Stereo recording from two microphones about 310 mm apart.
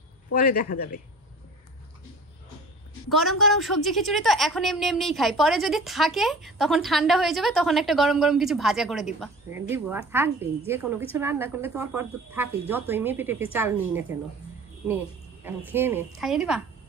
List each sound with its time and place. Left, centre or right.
0.3 s speech: left
3.1 s a woman's voice: centre
15.4 s a woman's voice: centre